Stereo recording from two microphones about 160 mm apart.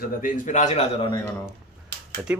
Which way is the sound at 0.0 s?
55° left (ahead or behind).